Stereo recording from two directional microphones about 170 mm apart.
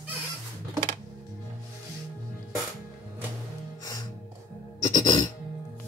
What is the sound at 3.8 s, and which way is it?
Music, 20° left (ahead or behind).